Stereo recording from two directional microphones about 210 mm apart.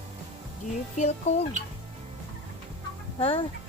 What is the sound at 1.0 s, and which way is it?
Speech, 30° left (ahead or behind).